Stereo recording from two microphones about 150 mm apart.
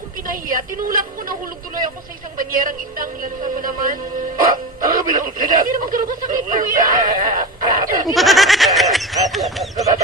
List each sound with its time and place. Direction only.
0.3 s a woman's voice: 70° right (ahead or behind)
2.4 s speech: 70° right (ahead or behind)
8.0 s a sound: centre (ahead or behind)